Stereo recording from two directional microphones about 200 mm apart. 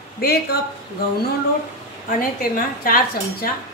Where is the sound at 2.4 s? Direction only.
45° left (ahead or behind).